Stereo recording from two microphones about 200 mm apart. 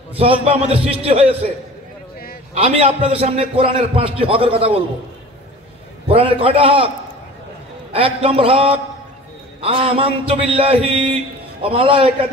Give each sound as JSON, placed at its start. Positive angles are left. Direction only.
{"t": 0.5, "sound": "a man's voice", "side_deg": -30}
{"t": 2.5, "sound": "a man's voice", "side_deg": -30}
{"t": 6.0, "sound": "a man's voice", "side_deg": -30}
{"t": 7.9, "sound": "a man's voice", "side_deg": -30}